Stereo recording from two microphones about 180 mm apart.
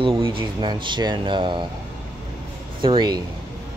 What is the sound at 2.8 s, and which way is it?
Speech, 25° right (ahead or behind).